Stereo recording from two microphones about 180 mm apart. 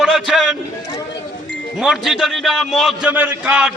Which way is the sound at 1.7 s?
Centre (ahead or behind).